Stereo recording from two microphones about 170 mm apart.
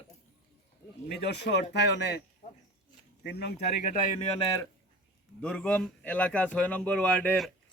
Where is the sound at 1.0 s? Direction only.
80° left.